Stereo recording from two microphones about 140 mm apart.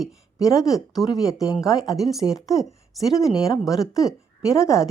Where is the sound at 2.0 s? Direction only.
Centre (ahead or behind).